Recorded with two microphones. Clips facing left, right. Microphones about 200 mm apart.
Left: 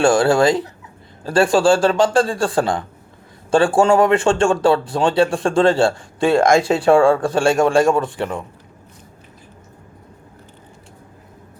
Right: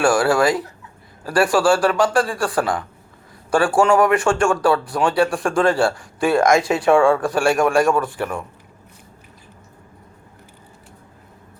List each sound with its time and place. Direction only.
0.0 s a man's voice: 25° left (ahead or behind)